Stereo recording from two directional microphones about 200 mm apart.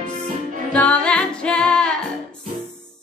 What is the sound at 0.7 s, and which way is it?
Music, 5° left (ahead or behind).